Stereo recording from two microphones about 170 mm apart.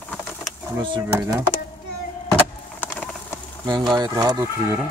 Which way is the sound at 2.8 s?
10° left (ahead or behind).